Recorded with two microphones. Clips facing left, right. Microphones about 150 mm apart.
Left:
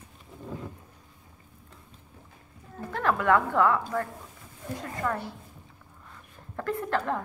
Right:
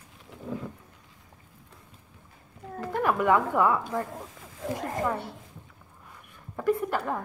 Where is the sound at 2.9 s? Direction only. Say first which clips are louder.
Even; 15° right (ahead or behind).